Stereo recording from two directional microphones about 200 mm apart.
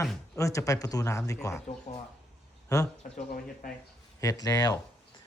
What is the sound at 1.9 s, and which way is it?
Speech, 30° left (ahead or behind).